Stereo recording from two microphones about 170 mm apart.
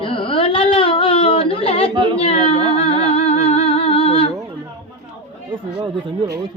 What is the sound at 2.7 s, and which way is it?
Music, 35° left (ahead or behind).